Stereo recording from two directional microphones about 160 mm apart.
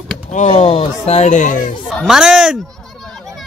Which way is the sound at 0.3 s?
45° left (ahead or behind).